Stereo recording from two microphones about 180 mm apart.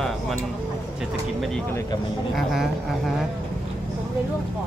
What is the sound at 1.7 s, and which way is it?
Speech, 15° left (ahead or behind).